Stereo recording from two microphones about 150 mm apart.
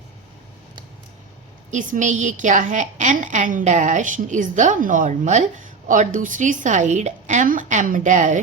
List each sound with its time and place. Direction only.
1.7 s a woman's voice: 60° right (ahead or behind)